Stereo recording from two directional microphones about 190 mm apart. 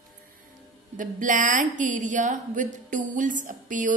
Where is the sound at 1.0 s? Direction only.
45° right (ahead or behind).